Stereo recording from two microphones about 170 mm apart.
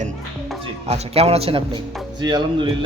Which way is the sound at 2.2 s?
25° right (ahead or behind).